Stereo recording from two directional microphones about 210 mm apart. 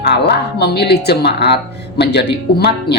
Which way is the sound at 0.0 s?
50° left (ahead or behind).